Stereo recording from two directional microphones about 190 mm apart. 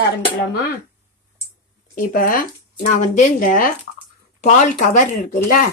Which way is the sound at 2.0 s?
45° left (ahead or behind).